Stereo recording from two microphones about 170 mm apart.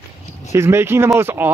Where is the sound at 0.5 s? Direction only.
15° right (ahead or behind).